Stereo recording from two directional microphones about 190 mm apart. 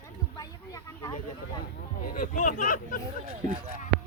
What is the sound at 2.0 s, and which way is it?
Speech, 50° left (ahead or behind).